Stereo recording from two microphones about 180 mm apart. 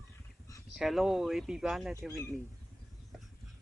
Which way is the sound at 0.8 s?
Centre (ahead or behind).